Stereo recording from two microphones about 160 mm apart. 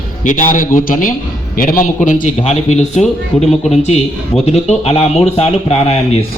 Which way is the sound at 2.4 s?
45° left (ahead or behind).